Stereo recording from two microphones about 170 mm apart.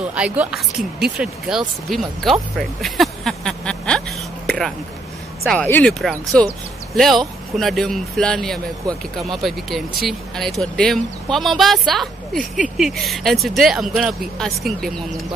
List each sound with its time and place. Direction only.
0.0 s speech: 5° right (ahead or behind)
4.5 s a sound: centre (ahead or behind)
5.4 s speech: 5° left (ahead or behind)
12.4 s speech: 50° right (ahead or behind)
12.7 s speech: centre (ahead or behind)